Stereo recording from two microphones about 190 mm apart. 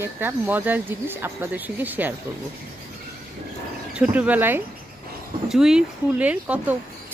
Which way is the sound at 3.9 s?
5° right (ahead or behind).